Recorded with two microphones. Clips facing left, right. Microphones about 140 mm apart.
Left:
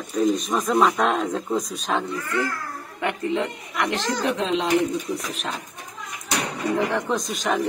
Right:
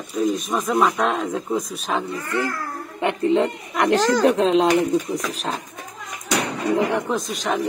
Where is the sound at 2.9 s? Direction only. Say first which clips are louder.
Right 6 dB; 30° right (ahead or behind).